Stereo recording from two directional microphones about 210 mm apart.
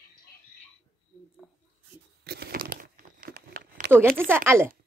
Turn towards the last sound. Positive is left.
turn(degrees=-10)  # may be behind; listen again after turning